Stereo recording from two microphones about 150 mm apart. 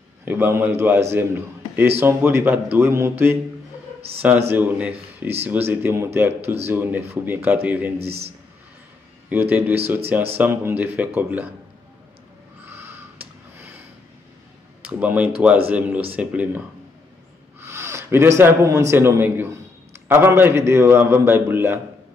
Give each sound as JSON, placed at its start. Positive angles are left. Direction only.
{"t": 0.2, "sound": "a man's voice", "side_deg": -15}
{"t": 4.5, "sound": "a man's voice", "side_deg": -15}
{"t": 8.0, "sound": "a man's voice", "side_deg": -45}
{"t": 9.3, "sound": "a man's voice", "side_deg": -10}
{"t": 12.6, "sound": "a sound", "side_deg": -15}
{"t": 14.9, "sound": "a man's voice", "side_deg": -10}
{"t": 17.6, "sound": "a sound", "side_deg": -15}
{"t": 18.4, "sound": "a man's voice", "side_deg": -20}